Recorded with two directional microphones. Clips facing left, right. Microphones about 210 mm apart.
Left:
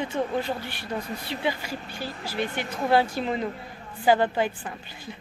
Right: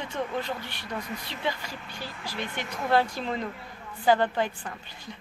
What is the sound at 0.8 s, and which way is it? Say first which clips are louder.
Speech: left 4 dB; 30° left (ahead or behind).